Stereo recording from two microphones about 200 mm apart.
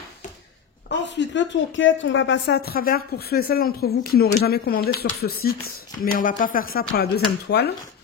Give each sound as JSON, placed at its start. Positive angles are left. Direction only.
{"t": 0.8, "sound": "a woman's voice", "side_deg": 60}